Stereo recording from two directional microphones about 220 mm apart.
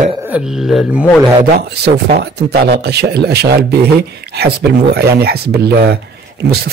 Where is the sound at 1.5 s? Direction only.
50° right (ahead or behind).